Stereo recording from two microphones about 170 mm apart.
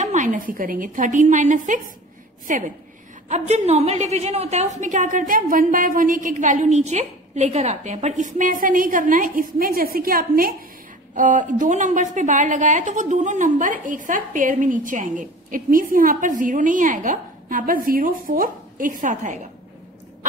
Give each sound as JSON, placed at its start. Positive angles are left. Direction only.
{"t": 0.0, "sound": "a woman's voice", "side_deg": -45}